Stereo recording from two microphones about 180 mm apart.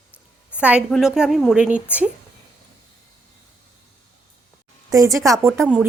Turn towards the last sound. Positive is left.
turn(degrees=-5)  # may be behind; listen again after turning